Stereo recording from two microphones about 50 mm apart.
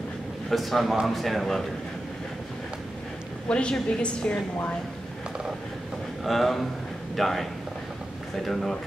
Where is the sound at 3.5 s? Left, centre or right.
Left.